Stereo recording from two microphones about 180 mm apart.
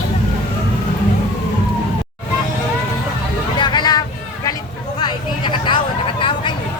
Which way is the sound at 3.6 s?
25° left (ahead or behind).